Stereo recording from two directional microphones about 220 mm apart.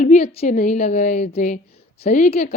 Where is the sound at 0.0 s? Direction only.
30° left (ahead or behind).